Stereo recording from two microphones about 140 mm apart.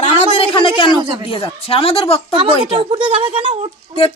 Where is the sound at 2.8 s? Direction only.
35° right (ahead or behind).